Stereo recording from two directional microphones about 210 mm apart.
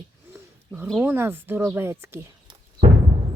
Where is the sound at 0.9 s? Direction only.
5° right (ahead or behind).